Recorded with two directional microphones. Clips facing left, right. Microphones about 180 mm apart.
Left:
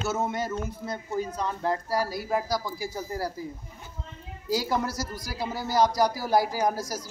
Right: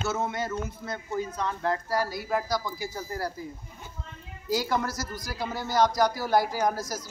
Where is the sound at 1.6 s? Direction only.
35° left (ahead or behind).